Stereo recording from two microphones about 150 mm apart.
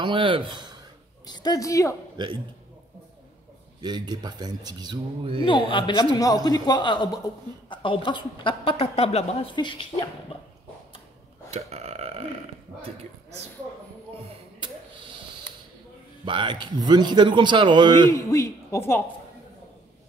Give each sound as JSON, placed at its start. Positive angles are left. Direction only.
{"t": 0.0, "sound": "speech", "side_deg": -35}
{"t": 1.2, "sound": "a woman's voice", "side_deg": 25}
{"t": 2.2, "sound": "speech", "side_deg": -30}
{"t": 3.8, "sound": "speech", "side_deg": -30}
{"t": 5.4, "sound": "a man's voice", "side_deg": 35}
{"t": 11.5, "sound": "burping", "side_deg": -45}
{"t": 16.3, "sound": "a man's voice", "side_deg": -35}
{"t": 18.1, "sound": "a man's voice", "side_deg": 20}